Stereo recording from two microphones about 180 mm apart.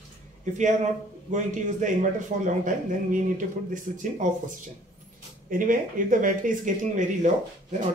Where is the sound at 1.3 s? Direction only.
45° right (ahead or behind).